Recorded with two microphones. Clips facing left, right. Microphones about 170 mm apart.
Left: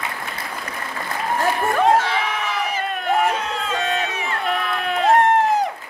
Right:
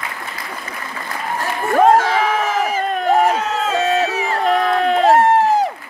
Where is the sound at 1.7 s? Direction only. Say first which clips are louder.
Right 7 dB; 45° right (ahead or behind).